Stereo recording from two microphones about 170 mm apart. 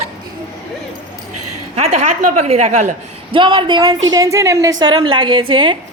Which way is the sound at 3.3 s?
25° right (ahead or behind).